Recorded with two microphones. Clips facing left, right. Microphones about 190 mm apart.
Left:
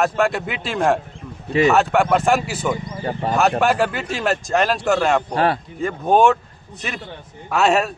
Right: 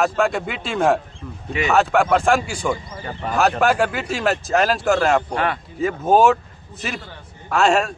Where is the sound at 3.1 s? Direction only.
35° left (ahead or behind).